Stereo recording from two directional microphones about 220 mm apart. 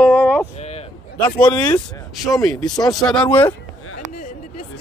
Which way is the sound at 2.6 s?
20° left (ahead or behind).